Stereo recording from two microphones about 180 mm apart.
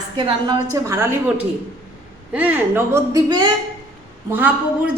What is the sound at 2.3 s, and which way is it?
Speech, 10° right (ahead or behind).